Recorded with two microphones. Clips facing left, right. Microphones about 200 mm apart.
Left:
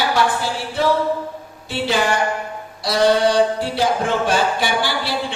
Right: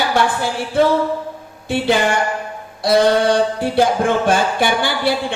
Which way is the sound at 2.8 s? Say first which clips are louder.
Right 2 dB; 55° right (ahead or behind).